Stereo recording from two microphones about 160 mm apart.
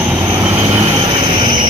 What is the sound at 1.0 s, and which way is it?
Vehicle, 25° right (ahead or behind).